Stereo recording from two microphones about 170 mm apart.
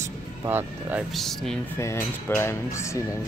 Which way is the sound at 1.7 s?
15° left (ahead or behind).